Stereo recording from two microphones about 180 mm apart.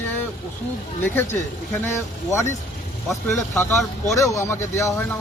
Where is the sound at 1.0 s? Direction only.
10° left (ahead or behind).